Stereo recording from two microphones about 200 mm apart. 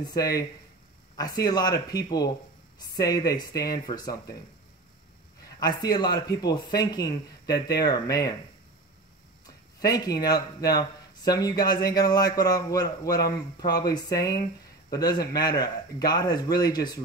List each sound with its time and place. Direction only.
0.1 s speech: 20° left (ahead or behind)
5.6 s speech: 20° left (ahead or behind)
10.2 s speech: 20° left (ahead or behind)